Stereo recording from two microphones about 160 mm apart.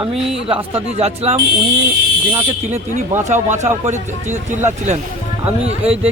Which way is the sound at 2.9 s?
50° right (ahead or behind).